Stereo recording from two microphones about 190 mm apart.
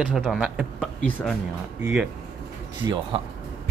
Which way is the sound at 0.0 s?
5° right (ahead or behind).